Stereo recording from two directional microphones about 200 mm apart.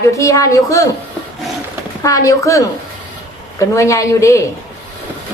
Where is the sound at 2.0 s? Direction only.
15° left (ahead or behind).